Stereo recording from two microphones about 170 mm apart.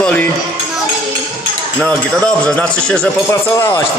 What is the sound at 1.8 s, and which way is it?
Speech, 5° left (ahead or behind).